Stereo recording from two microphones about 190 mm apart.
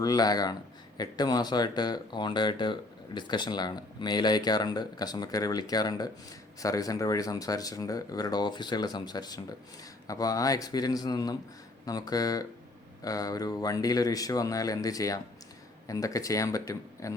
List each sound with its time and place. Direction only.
0.0 s speech: 20° left (ahead or behind)